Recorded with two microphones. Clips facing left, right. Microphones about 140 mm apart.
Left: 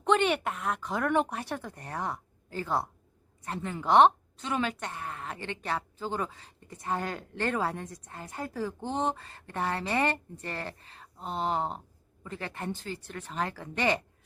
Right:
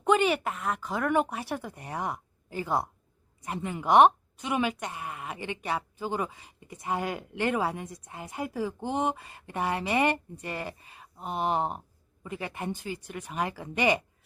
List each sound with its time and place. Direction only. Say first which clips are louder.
0.0 s speech: right 1 dB; 5° right (ahead or behind)